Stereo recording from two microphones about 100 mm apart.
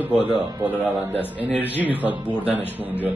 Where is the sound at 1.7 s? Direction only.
15° right (ahead or behind).